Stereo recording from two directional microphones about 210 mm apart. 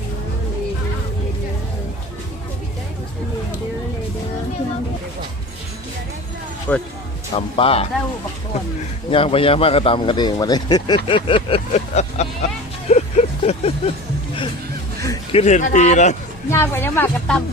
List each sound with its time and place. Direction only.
6.7 s speech: 5° left (ahead or behind)
7.3 s speech: 25° left (ahead or behind)
9.0 s speech: 25° left (ahead or behind)
12.9 s vehicle: 30° left (ahead or behind)
15.3 s a man's voice: 30° left (ahead or behind)
16.5 s speech: 10° left (ahead or behind)